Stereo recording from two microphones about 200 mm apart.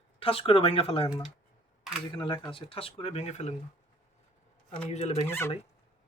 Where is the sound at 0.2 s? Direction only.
25° left (ahead or behind).